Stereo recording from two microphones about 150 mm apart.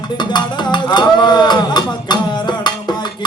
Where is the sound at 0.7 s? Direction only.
30° left (ahead or behind).